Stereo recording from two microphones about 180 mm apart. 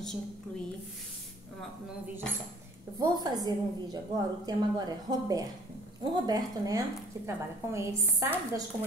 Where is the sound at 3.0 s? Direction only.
20° right (ahead or behind).